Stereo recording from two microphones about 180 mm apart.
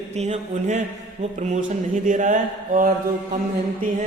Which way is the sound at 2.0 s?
45° right (ahead or behind).